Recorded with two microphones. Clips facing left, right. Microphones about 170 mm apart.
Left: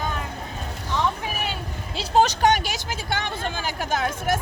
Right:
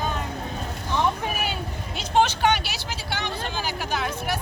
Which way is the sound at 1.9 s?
40° left (ahead or behind).